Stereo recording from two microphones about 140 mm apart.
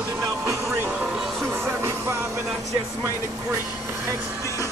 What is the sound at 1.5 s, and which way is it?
Music, 15° right (ahead or behind).